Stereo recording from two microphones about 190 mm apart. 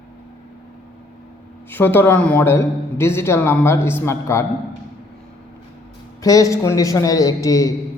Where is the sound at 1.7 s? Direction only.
10° left (ahead or behind).